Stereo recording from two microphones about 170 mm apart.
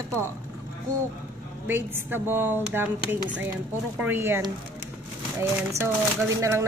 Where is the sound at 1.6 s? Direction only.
10° right (ahead or behind).